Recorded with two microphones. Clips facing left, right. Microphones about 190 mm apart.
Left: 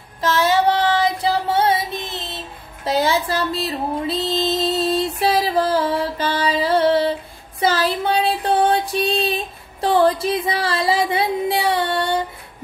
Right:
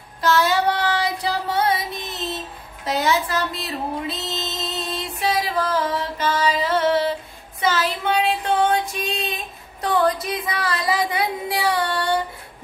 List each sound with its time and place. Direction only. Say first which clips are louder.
0.2 s child singing: left 2 dB; 25° left (ahead or behind)
2.8 s music: left 2 dB; 30° left (ahead or behind)
7.6 s a sound: left 3 dB; 35° left (ahead or behind)
9.8 s music: left 4 dB; 30° left (ahead or behind)